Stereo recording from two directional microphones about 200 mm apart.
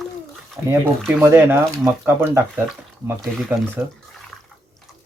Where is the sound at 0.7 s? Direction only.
10° right (ahead or behind).